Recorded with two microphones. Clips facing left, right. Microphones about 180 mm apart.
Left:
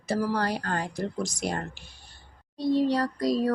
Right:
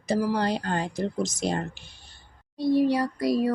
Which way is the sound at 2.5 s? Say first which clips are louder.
Right 2 dB; 10° right (ahead or behind).